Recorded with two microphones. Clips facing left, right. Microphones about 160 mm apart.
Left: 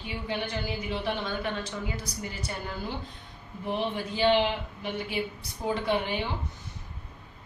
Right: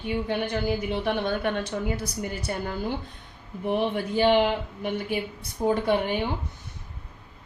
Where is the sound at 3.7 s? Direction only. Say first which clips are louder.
Right 6 dB; 50° right (ahead or behind).